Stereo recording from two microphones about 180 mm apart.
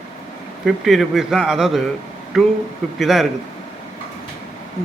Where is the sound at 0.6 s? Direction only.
Centre (ahead or behind).